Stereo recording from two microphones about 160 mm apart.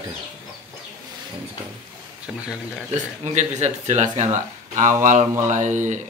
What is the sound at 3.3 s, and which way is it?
Speech, 45° right (ahead or behind).